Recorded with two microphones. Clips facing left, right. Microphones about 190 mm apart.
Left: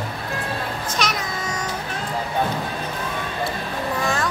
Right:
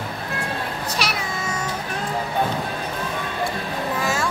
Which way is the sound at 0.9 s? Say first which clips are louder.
Left 2 dB; 10° right (ahead or behind).